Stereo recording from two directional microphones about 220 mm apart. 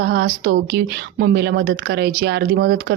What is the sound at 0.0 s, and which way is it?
A woman's voice, 45° right (ahead or behind).